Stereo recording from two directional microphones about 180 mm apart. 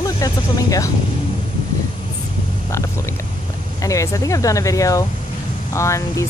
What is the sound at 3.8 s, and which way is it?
Speech, 15° left (ahead or behind).